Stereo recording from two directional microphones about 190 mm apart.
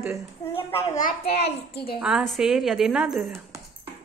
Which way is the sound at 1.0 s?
50° left (ahead or behind).